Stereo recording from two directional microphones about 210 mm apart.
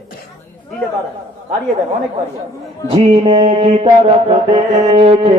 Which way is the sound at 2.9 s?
25° right (ahead or behind).